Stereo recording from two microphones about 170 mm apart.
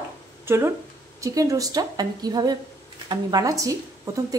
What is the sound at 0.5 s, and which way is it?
Speech, 15° right (ahead or behind).